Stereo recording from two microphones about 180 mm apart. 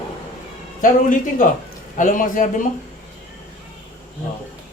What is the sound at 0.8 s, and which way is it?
A man's voice, 50° left (ahead or behind).